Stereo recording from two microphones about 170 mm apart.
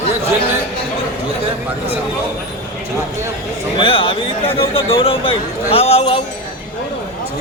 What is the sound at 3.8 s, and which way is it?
A man's voice, 30° left (ahead or behind).